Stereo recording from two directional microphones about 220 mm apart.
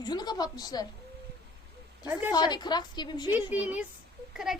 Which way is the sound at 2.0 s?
10° right (ahead or behind).